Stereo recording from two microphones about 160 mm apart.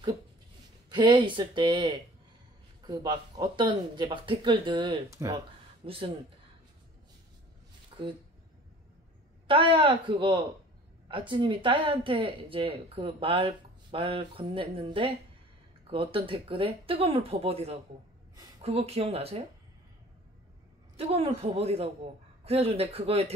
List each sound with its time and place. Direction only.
0.8 s speech: 30° right (ahead or behind)
5.9 s speech: 35° right (ahead or behind)
7.9 s a sound: 35° right (ahead or behind)
9.5 s speech: 30° right (ahead or behind)
20.9 s a woman's voice: 40° right (ahead or behind)